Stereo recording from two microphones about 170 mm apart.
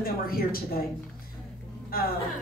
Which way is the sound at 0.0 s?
60° left (ahead or behind).